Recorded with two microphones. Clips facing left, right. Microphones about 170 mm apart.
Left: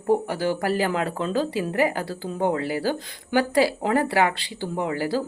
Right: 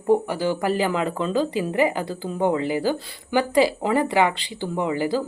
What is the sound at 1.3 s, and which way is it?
Speech, 15° right (ahead or behind).